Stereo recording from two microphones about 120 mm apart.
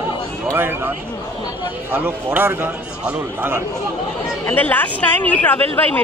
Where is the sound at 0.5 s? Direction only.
20° right (ahead or behind).